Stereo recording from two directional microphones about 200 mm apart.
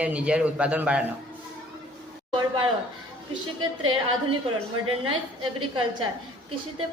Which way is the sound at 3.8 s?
90° right.